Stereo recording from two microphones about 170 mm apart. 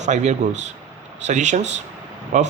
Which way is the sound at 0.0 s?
45° right (ahead or behind).